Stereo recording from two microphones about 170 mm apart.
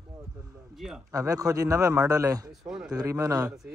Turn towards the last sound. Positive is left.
turn(degrees=-20)  # may be behind; listen again after turning